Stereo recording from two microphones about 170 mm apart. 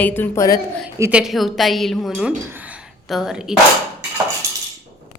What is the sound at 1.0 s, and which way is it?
A woman's voice, 5° right (ahead or behind).